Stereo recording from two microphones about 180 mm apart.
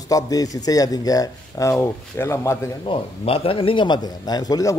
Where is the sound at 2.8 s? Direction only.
30° left (ahead or behind).